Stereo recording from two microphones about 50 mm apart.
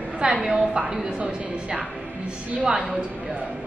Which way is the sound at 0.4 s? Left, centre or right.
Centre.